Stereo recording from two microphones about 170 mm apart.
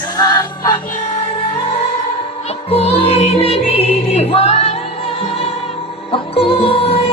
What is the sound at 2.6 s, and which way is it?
Music, 35° left (ahead or behind).